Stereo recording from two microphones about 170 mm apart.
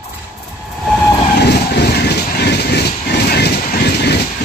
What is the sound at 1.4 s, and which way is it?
Vehicle, 75° left (ahead or behind).